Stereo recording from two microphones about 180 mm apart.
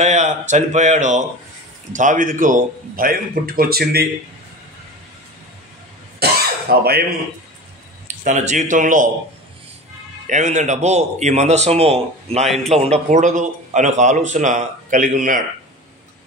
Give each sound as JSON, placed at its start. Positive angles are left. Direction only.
{"t": 0.0, "sound": "a man's voice", "side_deg": -40}
{"t": 6.2, "sound": "cough", "side_deg": -60}
{"t": 6.7, "sound": "speech", "side_deg": -60}
{"t": 8.2, "sound": "speech", "side_deg": -40}
{"t": 10.2, "sound": "a man's voice", "side_deg": -40}